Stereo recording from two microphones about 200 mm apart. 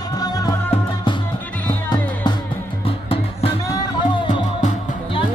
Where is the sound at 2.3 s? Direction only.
20° left (ahead or behind).